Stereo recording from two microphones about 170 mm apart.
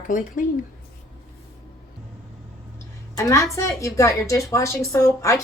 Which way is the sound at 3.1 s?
20° left (ahead or behind).